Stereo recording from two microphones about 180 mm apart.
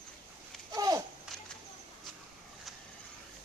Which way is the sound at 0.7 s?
20° right (ahead or behind).